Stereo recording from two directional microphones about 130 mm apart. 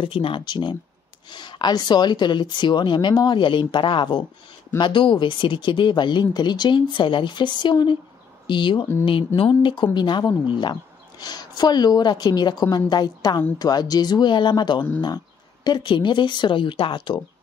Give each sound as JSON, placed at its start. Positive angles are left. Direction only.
{"t": 0.0, "sound": "speech", "side_deg": 40}